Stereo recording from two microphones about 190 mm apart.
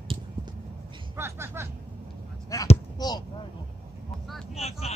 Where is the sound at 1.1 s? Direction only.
15° right (ahead or behind).